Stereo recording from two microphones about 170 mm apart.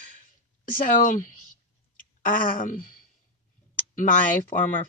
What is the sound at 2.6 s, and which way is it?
Speech, 55° left (ahead or behind).